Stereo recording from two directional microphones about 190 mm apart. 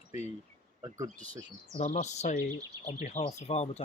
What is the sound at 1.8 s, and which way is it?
Speech, 40° left (ahead or behind).